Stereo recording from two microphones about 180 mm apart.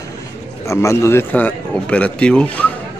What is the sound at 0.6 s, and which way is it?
Speech, 15° left (ahead or behind).